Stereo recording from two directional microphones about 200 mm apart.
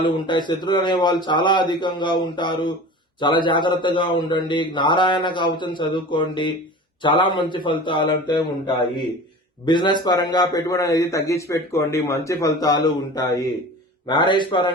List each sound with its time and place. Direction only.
0.0 s a man's voice: 25° left (ahead or behind)